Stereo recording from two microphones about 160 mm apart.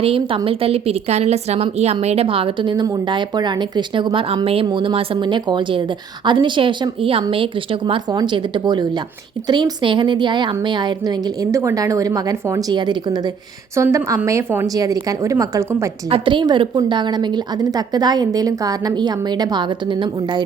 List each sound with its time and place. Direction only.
0.0 s a woman's voice: 35° right (ahead or behind)
16.0 s a woman's voice: 35° right (ahead or behind)